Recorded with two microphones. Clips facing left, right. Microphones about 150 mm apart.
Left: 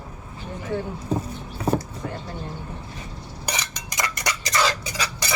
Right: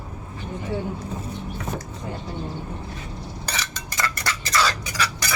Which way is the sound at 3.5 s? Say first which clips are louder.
Left 3 dB; 15° left (ahead or behind).